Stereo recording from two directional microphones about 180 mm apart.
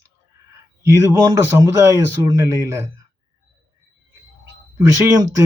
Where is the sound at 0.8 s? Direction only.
15° right (ahead or behind).